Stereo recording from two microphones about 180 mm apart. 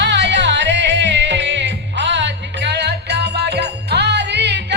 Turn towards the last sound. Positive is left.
turn(degrees=-70)  # may be behind; listen again after turning